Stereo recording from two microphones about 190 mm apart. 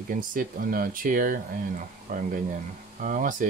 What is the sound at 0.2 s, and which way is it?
Speech, 45° right (ahead or behind).